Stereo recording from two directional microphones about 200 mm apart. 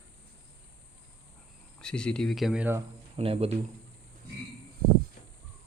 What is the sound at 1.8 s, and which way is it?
Speech, 5° left (ahead or behind).